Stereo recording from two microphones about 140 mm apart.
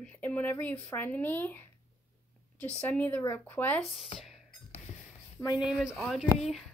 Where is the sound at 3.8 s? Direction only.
Centre (ahead or behind).